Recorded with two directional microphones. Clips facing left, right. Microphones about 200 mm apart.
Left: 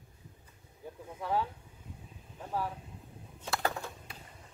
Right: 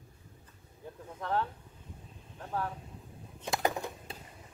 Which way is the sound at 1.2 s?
10° left (ahead or behind).